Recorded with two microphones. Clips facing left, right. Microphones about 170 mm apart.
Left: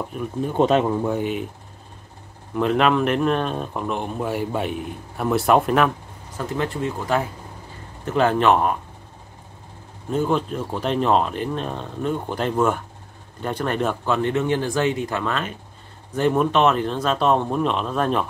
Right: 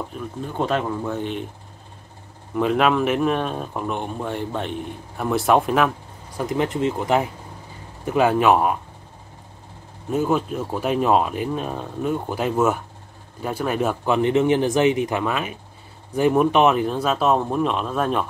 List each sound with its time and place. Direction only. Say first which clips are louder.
0.4 s speech: left 5 dB; 20° left (ahead or behind)
2.5 s speech: even; centre (ahead or behind)
6.3 s speech: right 3 dB; 15° right (ahead or behind)
10.1 s speech: right 1 dB; 5° right (ahead or behind)